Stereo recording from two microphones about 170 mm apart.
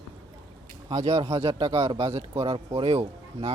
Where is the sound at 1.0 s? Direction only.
35° right (ahead or behind).